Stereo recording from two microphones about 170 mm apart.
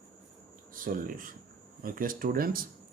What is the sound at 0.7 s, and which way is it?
Speech, 55° right (ahead or behind).